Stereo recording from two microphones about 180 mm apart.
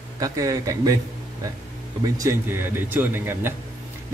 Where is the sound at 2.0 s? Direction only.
15° right (ahead or behind).